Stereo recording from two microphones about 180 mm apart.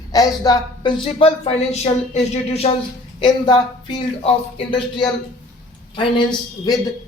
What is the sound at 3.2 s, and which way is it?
A man's voice, 25° left (ahead or behind).